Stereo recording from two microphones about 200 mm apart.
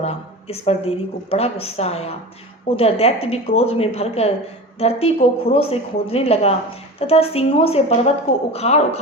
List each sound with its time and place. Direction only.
0.0 s a woman's voice: 30° left (ahead or behind)